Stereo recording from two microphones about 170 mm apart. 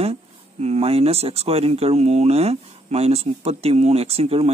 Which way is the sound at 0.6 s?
40° right (ahead or behind).